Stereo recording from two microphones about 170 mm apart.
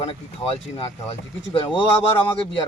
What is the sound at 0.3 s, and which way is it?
Speech, 35° left (ahead or behind).